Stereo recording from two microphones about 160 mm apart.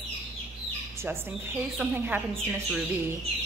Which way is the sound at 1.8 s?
Centre (ahead or behind).